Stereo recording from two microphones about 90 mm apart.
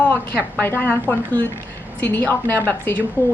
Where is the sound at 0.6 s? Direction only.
20° left (ahead or behind).